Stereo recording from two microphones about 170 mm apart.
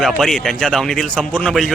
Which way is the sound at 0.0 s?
Centre (ahead or behind).